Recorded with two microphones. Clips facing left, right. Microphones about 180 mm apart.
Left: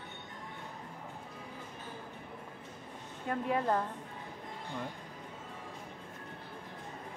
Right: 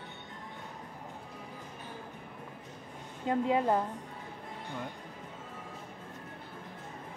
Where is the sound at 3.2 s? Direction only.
20° right (ahead or behind).